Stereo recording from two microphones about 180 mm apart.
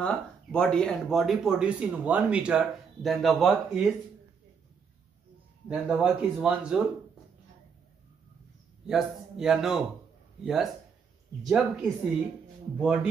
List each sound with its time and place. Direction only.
0.0 s speech: 5° left (ahead or behind)
5.7 s speech: centre (ahead or behind)
8.8 s speech: 5° right (ahead or behind)